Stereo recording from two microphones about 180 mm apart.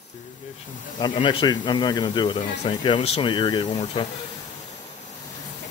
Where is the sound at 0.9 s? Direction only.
25° left (ahead or behind).